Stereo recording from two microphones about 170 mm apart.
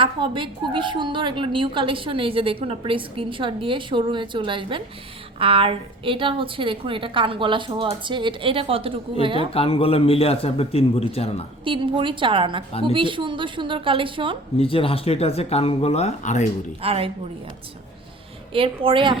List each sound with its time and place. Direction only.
0.0 s a woman's voice: 30° right (ahead or behind)
9.5 s a man's voice: 35° left (ahead or behind)
11.6 s a woman's voice: 30° right (ahead or behind)
14.6 s a man's voice: 35° left (ahead or behind)
16.8 s a woman's voice: 35° right (ahead or behind)
18.5 s a woman's voice: 30° right (ahead or behind)